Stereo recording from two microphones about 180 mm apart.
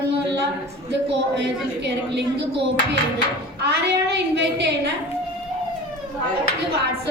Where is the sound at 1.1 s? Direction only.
70° right (ahead or behind).